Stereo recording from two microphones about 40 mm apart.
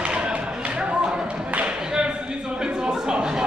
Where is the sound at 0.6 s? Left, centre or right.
Right.